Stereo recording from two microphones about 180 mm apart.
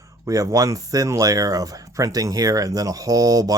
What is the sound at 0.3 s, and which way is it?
Speech, 20° right (ahead or behind).